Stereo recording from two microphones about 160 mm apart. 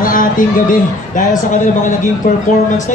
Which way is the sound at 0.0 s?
60° left (ahead or behind).